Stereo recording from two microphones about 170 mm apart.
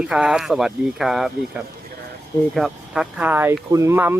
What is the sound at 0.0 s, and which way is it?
Speech, 5° right (ahead or behind).